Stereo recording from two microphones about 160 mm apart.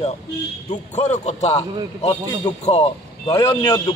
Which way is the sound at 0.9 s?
45° left (ahead or behind).